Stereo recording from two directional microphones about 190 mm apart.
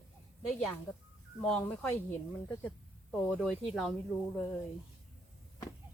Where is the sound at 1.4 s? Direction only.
5° left (ahead or behind).